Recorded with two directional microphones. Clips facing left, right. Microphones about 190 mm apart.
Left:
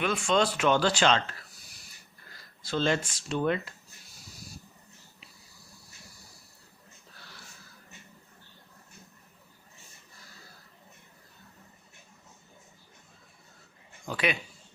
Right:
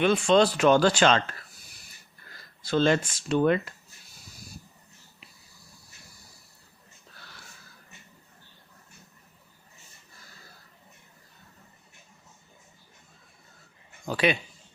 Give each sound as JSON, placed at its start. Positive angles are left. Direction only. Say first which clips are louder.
{"t": 0.0, "sound": "speech", "louder": "right 6 dB", "side_deg": -30}
{"t": 2.6, "sound": "speech", "louder": "right 5 dB", "side_deg": -60}
{"t": 14.1, "sound": "speech", "louder": "right 5 dB", "side_deg": -30}